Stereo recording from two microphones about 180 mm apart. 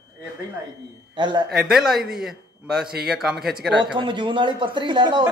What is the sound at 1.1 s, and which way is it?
Speech, 25° right (ahead or behind).